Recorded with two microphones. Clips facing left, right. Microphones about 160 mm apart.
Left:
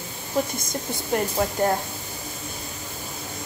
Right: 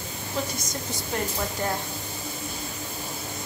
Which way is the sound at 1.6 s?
45° left (ahead or behind).